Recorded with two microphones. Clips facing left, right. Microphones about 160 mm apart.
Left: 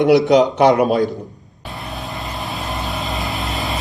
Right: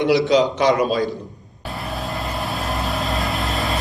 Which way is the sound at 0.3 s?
50° left (ahead or behind).